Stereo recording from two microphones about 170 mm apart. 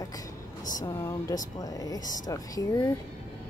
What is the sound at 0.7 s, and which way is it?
Speech, 15° left (ahead or behind).